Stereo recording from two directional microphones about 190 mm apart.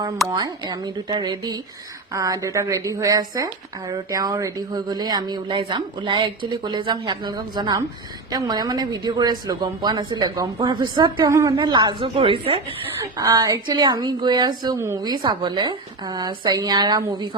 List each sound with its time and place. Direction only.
0.3 s a woman's voice: 20° right (ahead or behind)
13.0 s a woman's voice: 20° right (ahead or behind)